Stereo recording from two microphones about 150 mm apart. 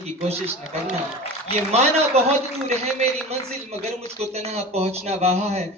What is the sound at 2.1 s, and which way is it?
A man's voice, 45° right (ahead or behind).